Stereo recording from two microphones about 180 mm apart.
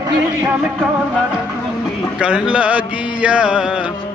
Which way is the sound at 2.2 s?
5° right (ahead or behind).